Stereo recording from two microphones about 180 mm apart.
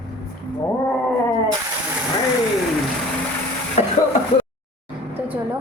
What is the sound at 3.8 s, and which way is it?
Throat clearing, 40° left (ahead or behind).